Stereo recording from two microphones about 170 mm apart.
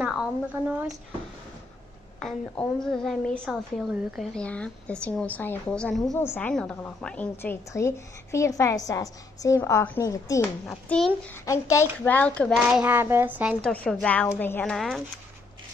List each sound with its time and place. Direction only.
0.0 s speech: 5° right (ahead or behind)
2.1 s a woman's voice: 5° left (ahead or behind); by 10.4 s 20° left (ahead or behind)
10.7 s a woman's voice: 5° left (ahead or behind)
11.4 s a woman's voice: 20° left (ahead or behind)
12.8 s speech: 10° right (ahead or behind)
13.6 s a woman's voice: 5° left (ahead or behind)